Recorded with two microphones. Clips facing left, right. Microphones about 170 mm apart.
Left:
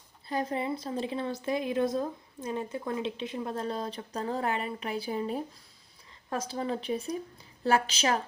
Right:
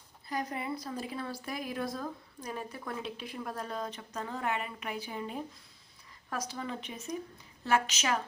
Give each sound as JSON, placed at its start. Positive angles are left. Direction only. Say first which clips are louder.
{"t": 0.3, "sound": "speech", "louder": "left 5 dB", "side_deg": 25}